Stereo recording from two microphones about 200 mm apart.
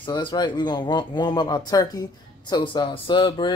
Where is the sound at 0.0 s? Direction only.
25° left (ahead or behind).